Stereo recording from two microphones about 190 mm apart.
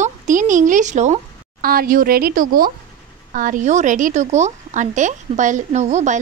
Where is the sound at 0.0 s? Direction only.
40° right (ahead or behind).